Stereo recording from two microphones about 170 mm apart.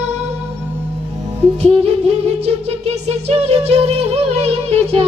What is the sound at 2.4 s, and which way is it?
Music, 35° right (ahead or behind).